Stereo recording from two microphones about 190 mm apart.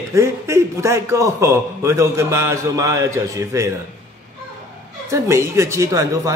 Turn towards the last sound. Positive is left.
turn(degrees=-15)  # may be behind; listen again after turning